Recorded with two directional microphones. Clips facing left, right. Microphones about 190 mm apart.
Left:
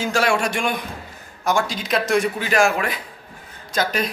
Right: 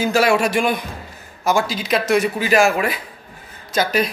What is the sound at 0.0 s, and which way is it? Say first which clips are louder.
A man's voice: right 4 dB; 5° right (ahead or behind).